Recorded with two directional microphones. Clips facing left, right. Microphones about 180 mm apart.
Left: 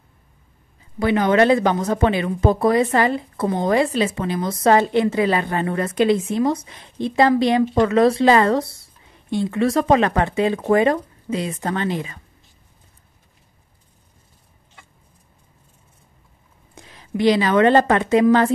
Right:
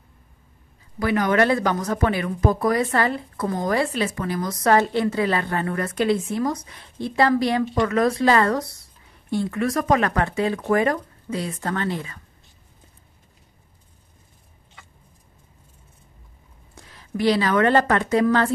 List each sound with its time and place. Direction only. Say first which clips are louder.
0.9 s speech: left 3 dB; 25° left (ahead or behind)
16.7 s a woman's voice: left 4 dB; 20° left (ahead or behind)